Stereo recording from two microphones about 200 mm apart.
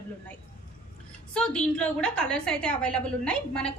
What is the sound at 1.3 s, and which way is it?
A woman's voice, 5° left (ahead or behind).